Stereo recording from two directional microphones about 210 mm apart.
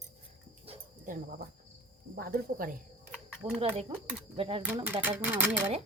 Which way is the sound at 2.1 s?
45° right (ahead or behind).